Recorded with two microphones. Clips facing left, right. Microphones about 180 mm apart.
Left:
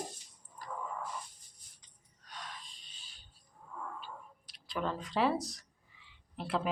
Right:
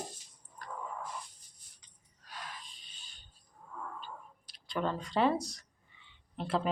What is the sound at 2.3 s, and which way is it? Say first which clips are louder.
Wheeze: right 1 dB; 5° right (ahead or behind).